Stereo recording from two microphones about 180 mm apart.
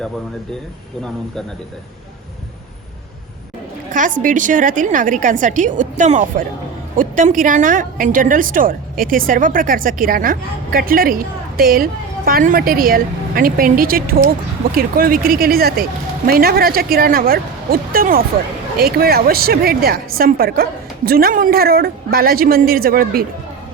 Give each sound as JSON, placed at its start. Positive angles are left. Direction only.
{"t": 3.9, "sound": "a woman's voice", "side_deg": -45}